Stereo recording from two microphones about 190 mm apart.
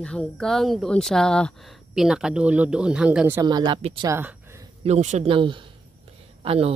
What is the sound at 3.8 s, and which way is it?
Speech, 35° right (ahead or behind).